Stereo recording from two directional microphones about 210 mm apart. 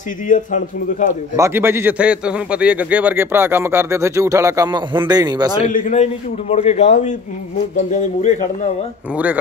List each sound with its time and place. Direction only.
0.3 s a man's voice: 35° left (ahead or behind)
1.3 s a man's voice: 10° right (ahead or behind)
5.7 s a man's voice: 40° left (ahead or behind)
9.1 s a man's voice: 5° right (ahead or behind)